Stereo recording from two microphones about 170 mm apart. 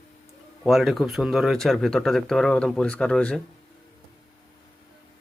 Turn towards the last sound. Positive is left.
turn(degrees=5)  # may be behind; listen again after turning